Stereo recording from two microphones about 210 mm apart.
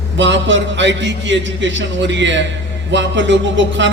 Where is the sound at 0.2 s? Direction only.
60° right (ahead or behind).